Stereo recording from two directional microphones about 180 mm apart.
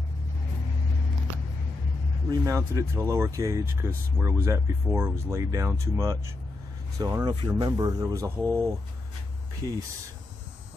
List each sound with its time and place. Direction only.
2.2 s speech: 15° right (ahead or behind)
8.4 s speech: 5° left (ahead or behind)
9.6 s speech: 20° right (ahead or behind)